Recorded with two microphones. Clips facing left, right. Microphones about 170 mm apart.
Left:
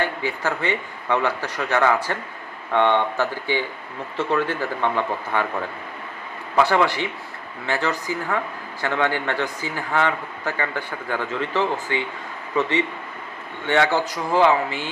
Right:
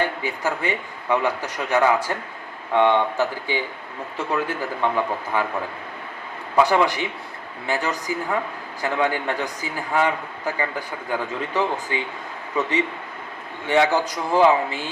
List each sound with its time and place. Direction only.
0.0 s speech: 15° right (ahead or behind)
6.6 s speech: 15° right (ahead or behind)
13.7 s speech: 15° right (ahead or behind)